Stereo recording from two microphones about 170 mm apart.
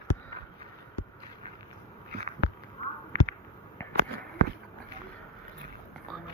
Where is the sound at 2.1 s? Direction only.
60° right (ahead or behind).